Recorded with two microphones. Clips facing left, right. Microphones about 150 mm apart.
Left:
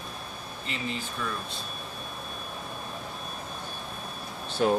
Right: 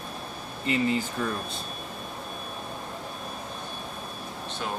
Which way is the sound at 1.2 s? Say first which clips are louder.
Right 4 dB; 45° right (ahead or behind).